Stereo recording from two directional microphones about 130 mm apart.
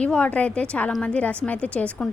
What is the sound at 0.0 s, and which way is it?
A woman's voice, 10° left (ahead or behind).